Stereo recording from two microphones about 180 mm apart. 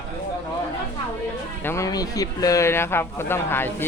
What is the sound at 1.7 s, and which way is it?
Speech, 15° left (ahead or behind).